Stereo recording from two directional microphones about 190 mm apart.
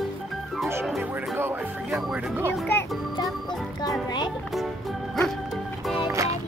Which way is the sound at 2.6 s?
5° left (ahead or behind).